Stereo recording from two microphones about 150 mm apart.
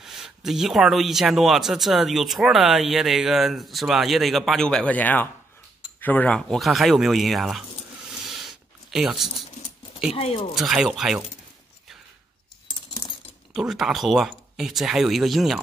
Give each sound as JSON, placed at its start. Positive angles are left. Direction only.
{"t": 0.0, "sound": "speech", "side_deg": 0}
{"t": 8.2, "sound": "a sound", "side_deg": 0}
{"t": 9.3, "sound": "keys jangling", "side_deg": 45}
{"t": 10.1, "sound": "speech", "side_deg": 40}
{"t": 10.5, "sound": "speech", "side_deg": -5}
{"t": 13.5, "sound": "speech", "side_deg": 0}